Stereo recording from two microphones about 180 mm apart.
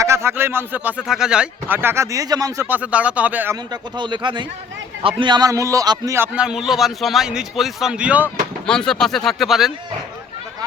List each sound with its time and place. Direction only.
0.0 s speech: 15° right (ahead or behind)
3.7 s a man's voice: 25° right (ahead or behind); by 8.3 s 5° right (ahead or behind)
8.6 s a man's voice: 5° left (ahead or behind)